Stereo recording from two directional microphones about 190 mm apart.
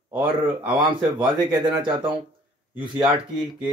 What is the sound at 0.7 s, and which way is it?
Speech, 25° right (ahead or behind).